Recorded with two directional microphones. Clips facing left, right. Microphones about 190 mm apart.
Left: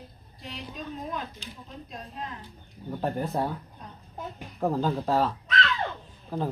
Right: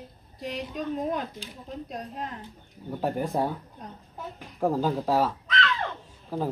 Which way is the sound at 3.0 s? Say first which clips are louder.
Right 2 dB; 10° right (ahead or behind).